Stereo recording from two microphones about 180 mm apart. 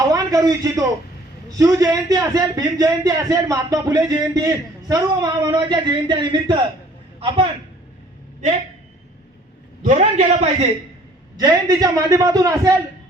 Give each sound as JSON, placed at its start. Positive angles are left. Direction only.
{"t": 0.1, "sound": "a man's voice", "side_deg": -20}
{"t": 9.8, "sound": "a man's voice", "side_deg": -40}
{"t": 11.3, "sound": "a man's voice", "side_deg": -20}